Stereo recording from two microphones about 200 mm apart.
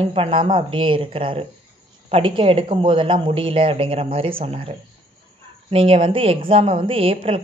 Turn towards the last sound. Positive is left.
turn(degrees=-30)  # may be behind; listen again after turning